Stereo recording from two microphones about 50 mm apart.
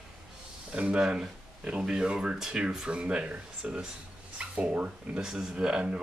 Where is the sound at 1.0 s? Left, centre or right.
Centre.